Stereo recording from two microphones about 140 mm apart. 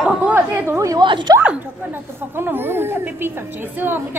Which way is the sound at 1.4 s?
15° right (ahead or behind).